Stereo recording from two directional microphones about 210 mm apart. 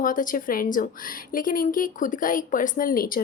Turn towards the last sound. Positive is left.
turn(degrees=40)  # may be behind; listen again after turning